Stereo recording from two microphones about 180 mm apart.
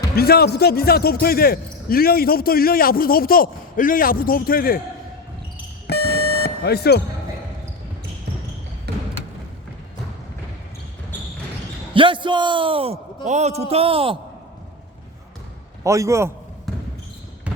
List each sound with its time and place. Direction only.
0.2 s a man's voice: 60° left (ahead or behind)
5.9 s buzzer: 65° left (ahead or behind)
8.9 s a sound: 65° right (ahead or behind)
11.9 s a man's voice: 25° right (ahead or behind)
15.8 s a man's voice: 15° right (ahead or behind)